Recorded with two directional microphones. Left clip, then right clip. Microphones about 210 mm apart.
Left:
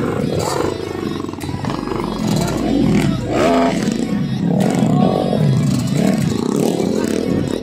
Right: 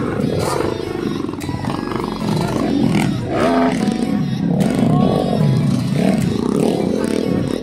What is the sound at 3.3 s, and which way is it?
Roaring cats, 50° left (ahead or behind).